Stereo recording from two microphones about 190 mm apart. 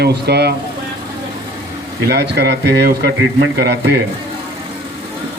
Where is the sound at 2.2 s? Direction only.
60° right (ahead or behind).